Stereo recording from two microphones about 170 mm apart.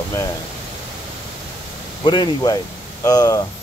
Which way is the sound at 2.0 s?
25° left (ahead or behind).